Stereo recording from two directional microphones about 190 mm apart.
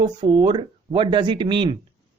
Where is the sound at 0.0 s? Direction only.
25° right (ahead or behind).